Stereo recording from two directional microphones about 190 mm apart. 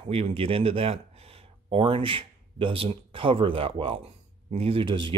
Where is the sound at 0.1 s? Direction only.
30° right (ahead or behind).